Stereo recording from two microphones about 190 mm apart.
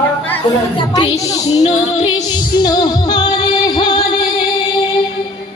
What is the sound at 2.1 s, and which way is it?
Music, 20° left (ahead or behind).